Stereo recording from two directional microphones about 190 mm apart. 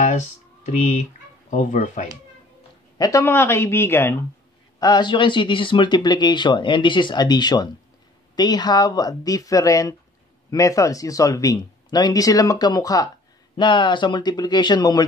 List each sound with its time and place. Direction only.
0.0 s speech: 40° left (ahead or behind)
3.0 s speech: 15° left (ahead or behind)